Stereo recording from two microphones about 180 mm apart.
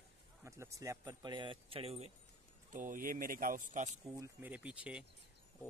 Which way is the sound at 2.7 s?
50° right (ahead or behind).